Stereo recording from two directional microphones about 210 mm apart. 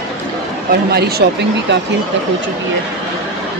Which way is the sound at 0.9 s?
50° right (ahead or behind).